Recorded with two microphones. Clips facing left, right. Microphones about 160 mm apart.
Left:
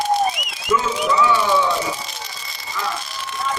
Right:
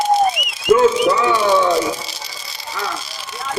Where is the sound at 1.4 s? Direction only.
75° right (ahead or behind).